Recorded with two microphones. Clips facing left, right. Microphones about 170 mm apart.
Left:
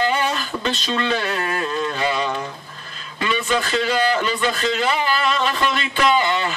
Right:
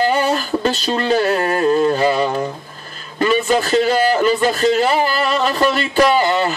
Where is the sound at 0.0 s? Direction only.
40° right (ahead or behind).